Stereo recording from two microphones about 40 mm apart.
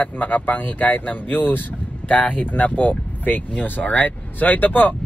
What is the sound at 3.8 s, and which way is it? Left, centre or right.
Speech, left.